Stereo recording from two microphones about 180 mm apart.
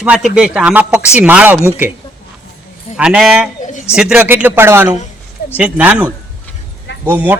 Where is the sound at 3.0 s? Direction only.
5° right (ahead or behind).